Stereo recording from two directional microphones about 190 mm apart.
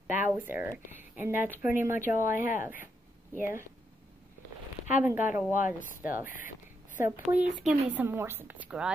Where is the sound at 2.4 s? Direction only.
45° left (ahead or behind).